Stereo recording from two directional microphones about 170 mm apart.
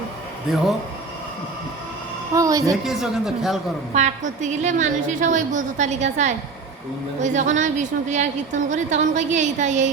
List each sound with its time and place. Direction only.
2.3 s a woman's voice: 20° right (ahead or behind)
2.8 s speech: centre (ahead or behind)
3.9 s a woman's voice: 45° right (ahead or behind)